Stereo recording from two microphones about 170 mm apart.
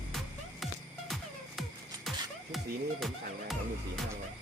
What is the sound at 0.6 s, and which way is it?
Music, centre (ahead or behind).